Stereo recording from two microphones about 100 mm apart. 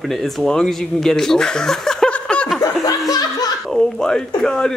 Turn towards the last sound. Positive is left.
turn(degrees=5)  # may be behind; listen again after turning